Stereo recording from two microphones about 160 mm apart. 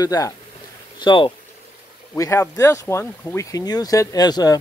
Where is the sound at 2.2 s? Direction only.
20° left (ahead or behind).